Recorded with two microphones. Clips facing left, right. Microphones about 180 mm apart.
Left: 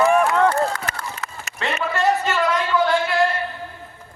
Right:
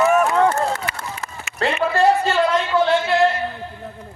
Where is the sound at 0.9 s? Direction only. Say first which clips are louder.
Left 1 dB; 45° left (ahead or behind).